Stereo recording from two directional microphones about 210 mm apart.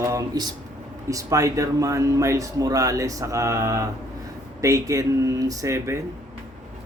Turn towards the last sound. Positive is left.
turn(degrees=-15)  # may be behind; listen again after turning